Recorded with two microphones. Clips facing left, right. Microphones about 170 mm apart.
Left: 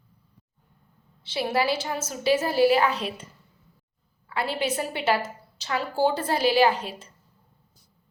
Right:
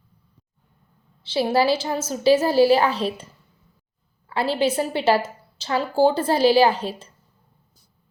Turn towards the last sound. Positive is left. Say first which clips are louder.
# right 3 dB
turn(degrees=-30)  # may be behind; listen again after turning